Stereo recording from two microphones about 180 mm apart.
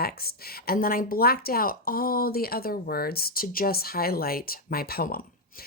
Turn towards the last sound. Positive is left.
turn(degrees=55)  # may be behind; listen again after turning